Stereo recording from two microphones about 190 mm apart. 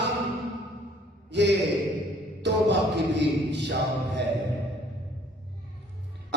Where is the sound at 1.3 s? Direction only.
65° right (ahead or behind).